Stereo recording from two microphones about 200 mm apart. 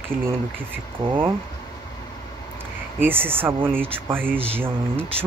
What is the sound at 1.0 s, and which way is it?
Speech, 25° right (ahead or behind).